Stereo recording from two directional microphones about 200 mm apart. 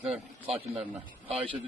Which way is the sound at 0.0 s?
5° right (ahead or behind).